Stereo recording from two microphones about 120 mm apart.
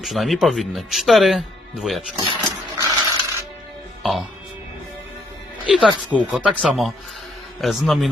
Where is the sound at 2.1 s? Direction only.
45° right (ahead or behind).